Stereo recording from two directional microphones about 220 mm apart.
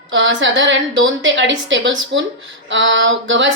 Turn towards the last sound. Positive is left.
turn(degrees=-60)  # may be behind; listen again after turning